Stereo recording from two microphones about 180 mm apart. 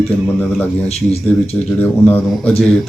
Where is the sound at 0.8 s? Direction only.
35° left (ahead or behind).